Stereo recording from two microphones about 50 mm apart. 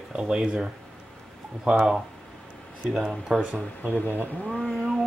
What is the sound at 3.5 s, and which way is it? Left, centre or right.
Speech, right.